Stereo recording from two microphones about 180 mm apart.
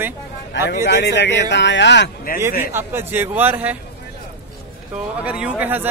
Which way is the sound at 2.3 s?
55° left (ahead or behind).